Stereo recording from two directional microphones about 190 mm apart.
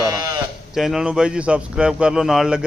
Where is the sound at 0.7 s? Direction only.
Centre (ahead or behind).